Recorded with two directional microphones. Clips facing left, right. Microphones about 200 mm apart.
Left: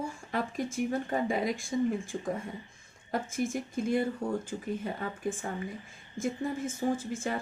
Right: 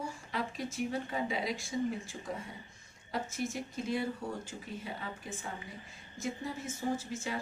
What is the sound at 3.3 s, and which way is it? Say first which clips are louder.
Speech: left 5 dB; 50° left (ahead or behind).